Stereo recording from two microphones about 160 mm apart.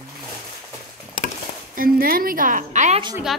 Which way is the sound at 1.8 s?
65° right (ahead or behind).